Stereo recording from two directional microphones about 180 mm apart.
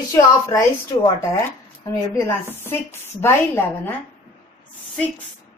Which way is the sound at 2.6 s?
15° left (ahead or behind).